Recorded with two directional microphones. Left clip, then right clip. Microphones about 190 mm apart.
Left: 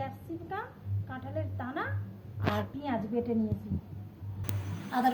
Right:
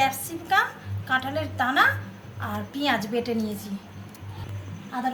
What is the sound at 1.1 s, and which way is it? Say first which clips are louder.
Speech: right 14 dB; 10° left (ahead or behind).